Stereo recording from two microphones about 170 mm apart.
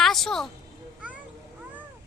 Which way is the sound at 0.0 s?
Centre (ahead or behind).